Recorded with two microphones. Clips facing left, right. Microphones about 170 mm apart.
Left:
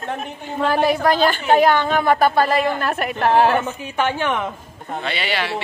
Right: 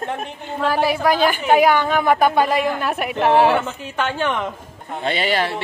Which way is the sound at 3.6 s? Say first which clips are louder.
Left 2 dB; 10° left (ahead or behind).